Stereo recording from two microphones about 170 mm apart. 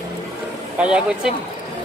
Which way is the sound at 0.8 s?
5° right (ahead or behind).